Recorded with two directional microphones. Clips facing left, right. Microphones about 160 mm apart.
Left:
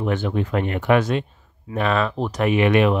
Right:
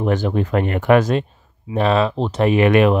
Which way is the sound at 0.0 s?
40° right (ahead or behind).